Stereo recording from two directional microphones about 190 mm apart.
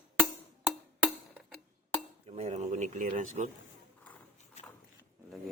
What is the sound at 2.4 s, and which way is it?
Speech, 35° right (ahead or behind).